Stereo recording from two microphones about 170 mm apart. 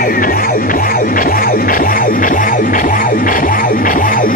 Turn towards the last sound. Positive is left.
turn(degrees=55)  # may be behind; listen again after turning